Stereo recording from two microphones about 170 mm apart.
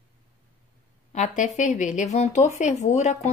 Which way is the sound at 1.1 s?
45° left (ahead or behind).